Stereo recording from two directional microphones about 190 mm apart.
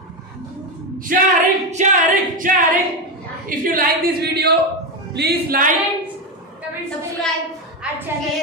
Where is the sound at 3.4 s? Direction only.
45° right (ahead or behind).